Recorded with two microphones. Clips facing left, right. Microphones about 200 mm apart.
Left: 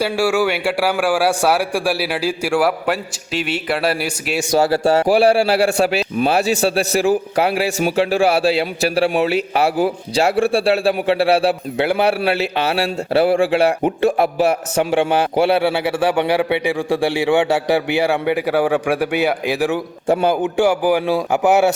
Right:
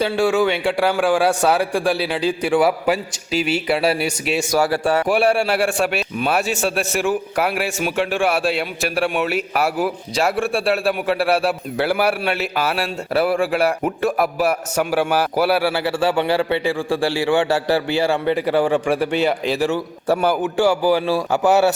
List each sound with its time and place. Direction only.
0.0 s a man's voice: 10° left (ahead or behind)
4.5 s a man's voice: 25° left (ahead or behind)